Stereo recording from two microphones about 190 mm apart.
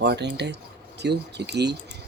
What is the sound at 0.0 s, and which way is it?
Speech, 60° right (ahead or behind).